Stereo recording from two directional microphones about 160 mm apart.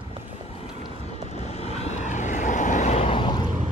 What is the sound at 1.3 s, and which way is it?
Vehicle, 45° left (ahead or behind).